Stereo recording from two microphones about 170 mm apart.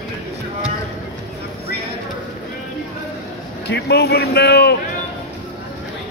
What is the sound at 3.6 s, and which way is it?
A man's voice, 75° left (ahead or behind).